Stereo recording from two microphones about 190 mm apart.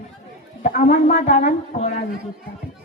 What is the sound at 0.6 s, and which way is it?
A woman's voice, 45° left (ahead or behind).